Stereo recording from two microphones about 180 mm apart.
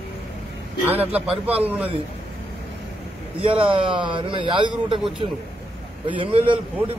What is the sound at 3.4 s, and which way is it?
A man's voice, 30° right (ahead or behind).